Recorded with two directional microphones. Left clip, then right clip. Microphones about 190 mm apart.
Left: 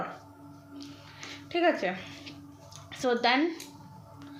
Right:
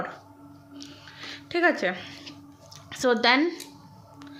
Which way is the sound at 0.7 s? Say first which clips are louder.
Right 3 dB; 40° right (ahead or behind).